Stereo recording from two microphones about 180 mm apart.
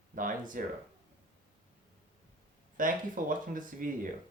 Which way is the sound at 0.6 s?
50° right (ahead or behind).